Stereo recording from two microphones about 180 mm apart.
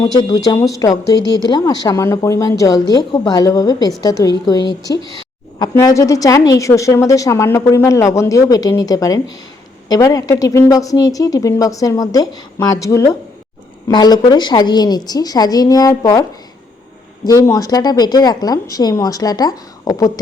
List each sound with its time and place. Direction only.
0.0 s a woman's voice: 20° left (ahead or behind)
17.2 s a woman's voice: 20° left (ahead or behind)